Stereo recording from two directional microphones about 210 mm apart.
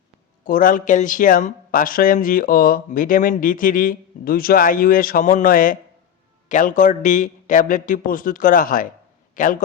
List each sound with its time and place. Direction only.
0.4 s a man's voice: 40° left (ahead or behind)